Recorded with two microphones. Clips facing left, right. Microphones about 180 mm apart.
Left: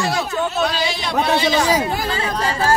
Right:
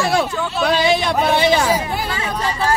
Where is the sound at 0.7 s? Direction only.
55° right (ahead or behind).